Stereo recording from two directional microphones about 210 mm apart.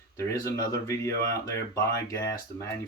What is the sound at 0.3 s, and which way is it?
Speech, 15° left (ahead or behind).